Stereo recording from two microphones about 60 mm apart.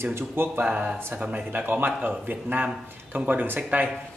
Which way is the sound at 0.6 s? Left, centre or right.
Right.